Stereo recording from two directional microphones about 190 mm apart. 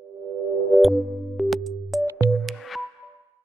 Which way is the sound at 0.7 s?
Centre (ahead or behind).